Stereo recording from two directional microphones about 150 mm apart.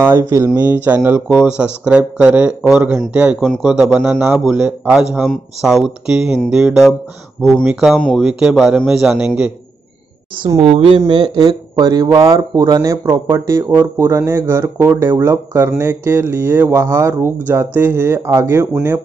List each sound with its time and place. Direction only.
0.0 s speech: 15° right (ahead or behind)
10.4 s speech: 35° right (ahead or behind); by 18.7 s 15° right (ahead or behind)